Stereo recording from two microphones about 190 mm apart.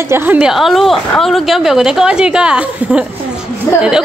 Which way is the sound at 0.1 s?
5° right (ahead or behind).